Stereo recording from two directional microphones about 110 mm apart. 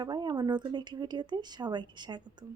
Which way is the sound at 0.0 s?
40° right (ahead or behind).